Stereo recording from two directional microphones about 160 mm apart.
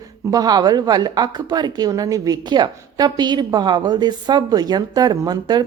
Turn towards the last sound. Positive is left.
turn(degrees=-25)  # may be behind; listen again after turning